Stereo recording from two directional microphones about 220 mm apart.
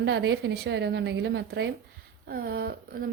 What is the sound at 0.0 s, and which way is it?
A woman's voice, 50° right (ahead or behind).